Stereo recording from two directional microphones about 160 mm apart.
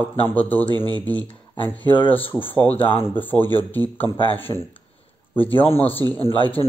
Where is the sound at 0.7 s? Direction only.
25° right (ahead or behind).